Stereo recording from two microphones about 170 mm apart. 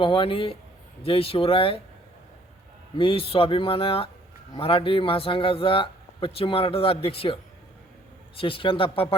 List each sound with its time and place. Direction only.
0.0 s a man's voice: 30° left (ahead or behind)
3.0 s a man's voice: 30° left (ahead or behind)
8.4 s a man's voice: 30° left (ahead or behind)